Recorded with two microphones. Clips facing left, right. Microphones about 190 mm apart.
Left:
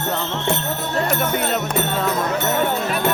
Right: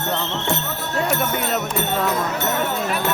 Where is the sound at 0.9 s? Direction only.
Centre (ahead or behind).